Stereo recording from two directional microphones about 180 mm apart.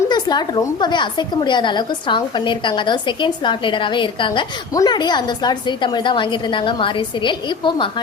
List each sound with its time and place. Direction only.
0.1 s a woman's voice: 25° left (ahead or behind)